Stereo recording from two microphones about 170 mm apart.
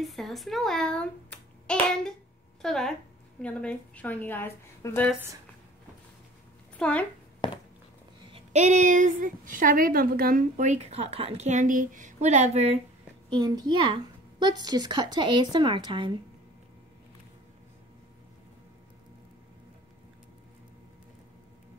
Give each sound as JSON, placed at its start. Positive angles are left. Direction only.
{"t": 0.0, "sound": "a child's voice", "side_deg": 0}
{"t": 6.8, "sound": "a woman's voice", "side_deg": 5}
{"t": 8.5, "sound": "a woman's voice", "side_deg": -45}
{"t": 13.3, "sound": "speech", "side_deg": -25}